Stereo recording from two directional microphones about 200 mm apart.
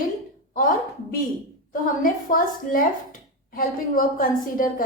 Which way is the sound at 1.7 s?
45° left (ahead or behind).